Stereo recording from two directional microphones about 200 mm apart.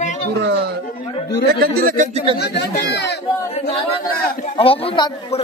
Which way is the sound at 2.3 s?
55° left (ahead or behind).